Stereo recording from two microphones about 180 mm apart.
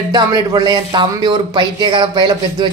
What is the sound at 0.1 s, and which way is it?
Speech, 20° right (ahead or behind).